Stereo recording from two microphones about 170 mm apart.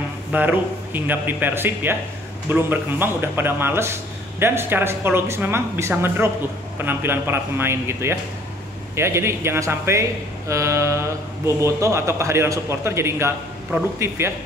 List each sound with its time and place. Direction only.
0.3 s speech: 10° right (ahead or behind)